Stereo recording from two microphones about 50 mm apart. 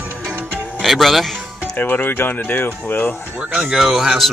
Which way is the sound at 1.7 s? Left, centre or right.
Left.